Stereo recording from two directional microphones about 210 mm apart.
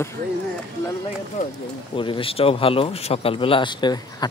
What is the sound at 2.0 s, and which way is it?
Speech, 25° left (ahead or behind).